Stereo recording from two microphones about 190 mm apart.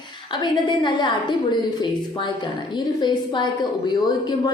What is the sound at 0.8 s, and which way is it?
A woman's voice, 25° left (ahead or behind).